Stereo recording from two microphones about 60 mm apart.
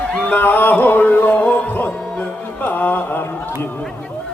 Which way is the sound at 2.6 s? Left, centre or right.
Left.